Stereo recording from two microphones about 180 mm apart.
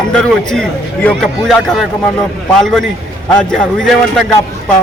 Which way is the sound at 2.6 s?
Centre (ahead or behind).